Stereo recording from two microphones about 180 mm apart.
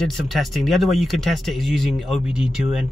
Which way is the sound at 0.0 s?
Centre (ahead or behind).